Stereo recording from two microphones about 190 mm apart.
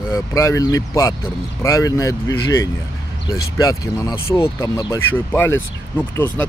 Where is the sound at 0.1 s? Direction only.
15° left (ahead or behind).